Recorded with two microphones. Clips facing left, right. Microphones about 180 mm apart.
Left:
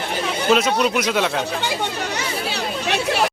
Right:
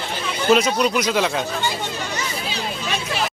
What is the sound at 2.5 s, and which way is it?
Chatter, 65° left (ahead or behind).